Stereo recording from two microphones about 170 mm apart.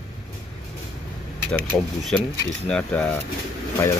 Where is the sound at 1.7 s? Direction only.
10° left (ahead or behind).